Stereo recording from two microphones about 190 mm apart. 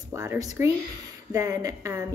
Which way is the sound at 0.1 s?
15° right (ahead or behind).